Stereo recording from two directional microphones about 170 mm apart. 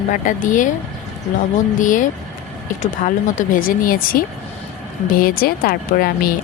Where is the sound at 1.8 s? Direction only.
50° left (ahead or behind).